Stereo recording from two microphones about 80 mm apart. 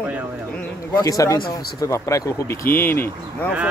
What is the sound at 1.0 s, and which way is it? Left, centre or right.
Speech, left.